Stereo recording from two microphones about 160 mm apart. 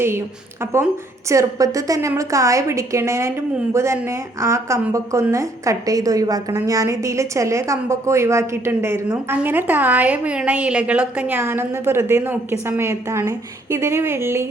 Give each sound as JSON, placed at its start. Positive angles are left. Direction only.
{"t": 0.6, "sound": "a woman's voice", "side_deg": -15}